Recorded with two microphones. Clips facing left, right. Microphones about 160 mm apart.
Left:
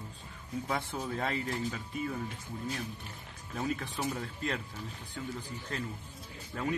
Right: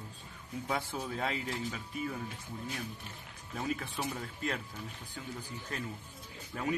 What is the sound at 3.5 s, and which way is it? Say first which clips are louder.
Speech: left 1 dB; 5° right (ahead or behind).